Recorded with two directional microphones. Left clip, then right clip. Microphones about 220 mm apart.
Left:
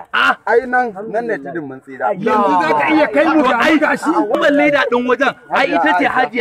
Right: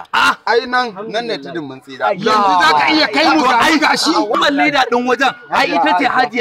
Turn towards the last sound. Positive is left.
turn(degrees=-45)  # may be behind; listen again after turning